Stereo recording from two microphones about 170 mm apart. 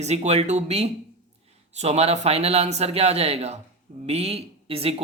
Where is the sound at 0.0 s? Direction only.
40° right (ahead or behind).